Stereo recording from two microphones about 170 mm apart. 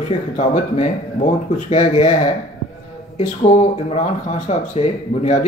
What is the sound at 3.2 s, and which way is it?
Speech, 45° left (ahead or behind).